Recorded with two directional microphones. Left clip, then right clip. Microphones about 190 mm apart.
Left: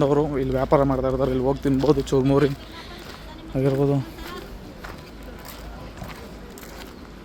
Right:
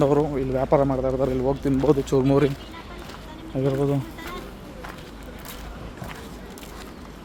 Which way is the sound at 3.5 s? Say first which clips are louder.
Left 2 dB; 15° left (ahead or behind).